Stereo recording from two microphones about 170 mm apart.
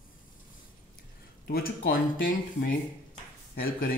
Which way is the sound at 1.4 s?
60° left (ahead or behind).